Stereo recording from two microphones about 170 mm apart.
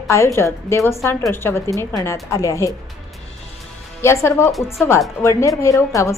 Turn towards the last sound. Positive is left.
turn(degrees=15)  # may be behind; listen again after turning